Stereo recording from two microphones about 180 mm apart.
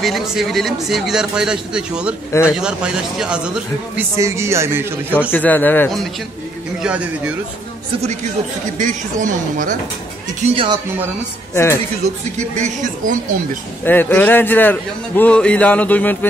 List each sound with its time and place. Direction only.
0.0 s speech: centre (ahead or behind)
4.2 s speech: 15° right (ahead or behind)
5.3 s a man's voice: 10° left (ahead or behind)
6.8 s speech: 5° right (ahead or behind)
8.7 s speech: 45° right (ahead or behind)
10.5 s speech: 30° right (ahead or behind)
11.5 s a man's voice: 15° left (ahead or behind)
12.4 s speech: 40° right (ahead or behind)
13.8 s a man's voice: 10° left (ahead or behind)